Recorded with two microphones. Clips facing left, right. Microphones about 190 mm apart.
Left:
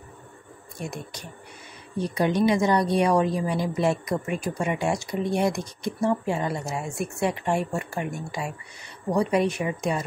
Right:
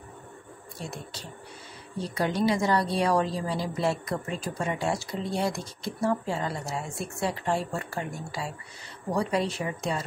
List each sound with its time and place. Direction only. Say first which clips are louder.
0.7 s a woman's voice: left 4 dB; 15° left (ahead or behind)